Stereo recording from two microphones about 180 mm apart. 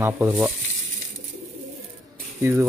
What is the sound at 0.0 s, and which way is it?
Speech, 15° right (ahead or behind).